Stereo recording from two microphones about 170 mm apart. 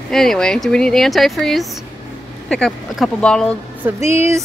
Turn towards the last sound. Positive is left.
turn(degrees=-15)  # may be behind; listen again after turning